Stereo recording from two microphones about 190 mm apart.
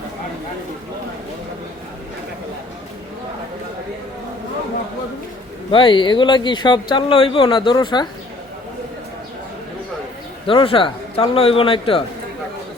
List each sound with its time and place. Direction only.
5.7 s speech: 25° left (ahead or behind)
10.4 s speech: 30° left (ahead or behind)